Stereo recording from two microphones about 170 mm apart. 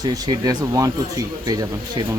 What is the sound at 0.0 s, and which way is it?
Speech, 20° right (ahead or behind).